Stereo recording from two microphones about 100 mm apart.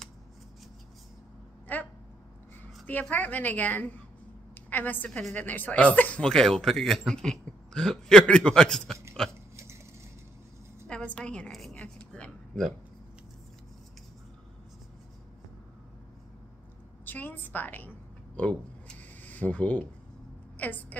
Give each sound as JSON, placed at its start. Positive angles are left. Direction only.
{"t": 1.7, "sound": "speech", "side_deg": 15}
{"t": 2.9, "sound": "a man's voice", "side_deg": 15}
{"t": 9.2, "sound": "burping", "side_deg": 5}
{"t": 10.9, "sound": "a woman's voice", "side_deg": 10}
{"t": 17.0, "sound": "a sound", "side_deg": 20}